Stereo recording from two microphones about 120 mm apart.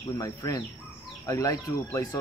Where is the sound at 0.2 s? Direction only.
30° left (ahead or behind).